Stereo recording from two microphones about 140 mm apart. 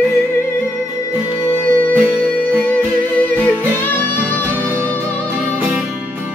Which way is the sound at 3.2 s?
10° left (ahead or behind).